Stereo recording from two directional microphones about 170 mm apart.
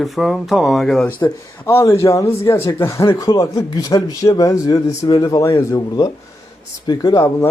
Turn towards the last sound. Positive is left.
turn(degrees=20)  # may be behind; listen again after turning